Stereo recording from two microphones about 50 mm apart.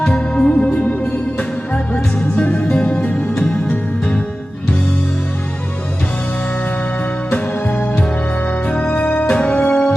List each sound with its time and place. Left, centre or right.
0.0 s music: left
7.3 s music: left